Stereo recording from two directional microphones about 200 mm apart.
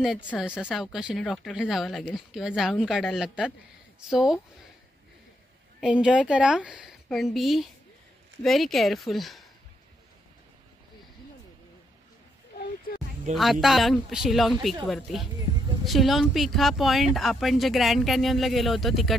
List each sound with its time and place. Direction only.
0.0 s speech: centre (ahead or behind)
5.8 s speech: 5° right (ahead or behind)
13.3 s speech: centre (ahead or behind)